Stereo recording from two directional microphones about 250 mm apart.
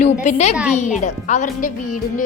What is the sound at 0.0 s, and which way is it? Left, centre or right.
A child's voice, left.